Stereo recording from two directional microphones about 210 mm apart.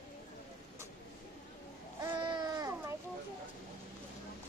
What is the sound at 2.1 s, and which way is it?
Baby cry, 20° right (ahead or behind).